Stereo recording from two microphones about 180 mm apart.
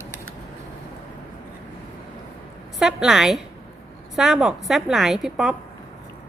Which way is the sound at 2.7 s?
Centre (ahead or behind).